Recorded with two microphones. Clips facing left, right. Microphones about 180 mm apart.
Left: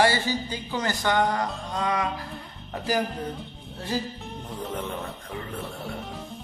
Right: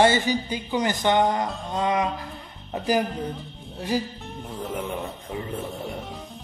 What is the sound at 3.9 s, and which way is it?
Speech, 15° right (ahead or behind).